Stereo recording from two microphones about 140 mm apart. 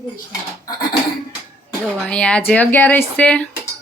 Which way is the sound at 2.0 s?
5° left (ahead or behind).